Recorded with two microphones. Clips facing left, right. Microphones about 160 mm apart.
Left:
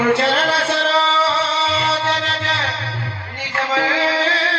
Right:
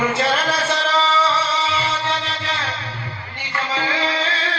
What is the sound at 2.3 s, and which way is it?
Music, 80° left.